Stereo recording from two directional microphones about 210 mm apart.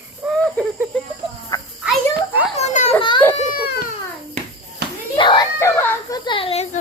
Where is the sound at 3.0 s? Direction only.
25° left (ahead or behind).